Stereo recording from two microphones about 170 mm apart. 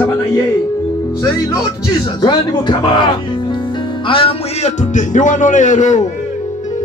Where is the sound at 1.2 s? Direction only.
20° left (ahead or behind).